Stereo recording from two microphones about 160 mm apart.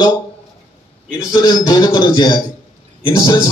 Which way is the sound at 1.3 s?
25° left (ahead or behind).